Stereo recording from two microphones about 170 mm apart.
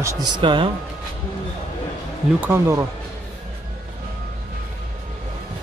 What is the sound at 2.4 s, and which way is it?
Speech, 10° right (ahead or behind).